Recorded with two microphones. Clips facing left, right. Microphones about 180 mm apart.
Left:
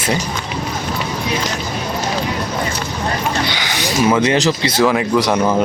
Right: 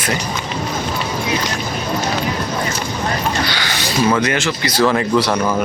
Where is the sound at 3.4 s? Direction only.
20° left (ahead or behind).